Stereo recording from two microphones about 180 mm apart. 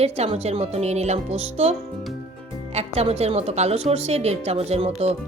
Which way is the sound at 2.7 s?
35° right (ahead or behind).